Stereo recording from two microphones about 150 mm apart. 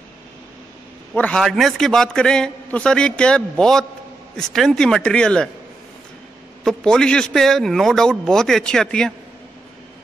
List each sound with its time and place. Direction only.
1.1 s a man's voice: 5° left (ahead or behind)
6.6 s a man's voice: 5° left (ahead or behind)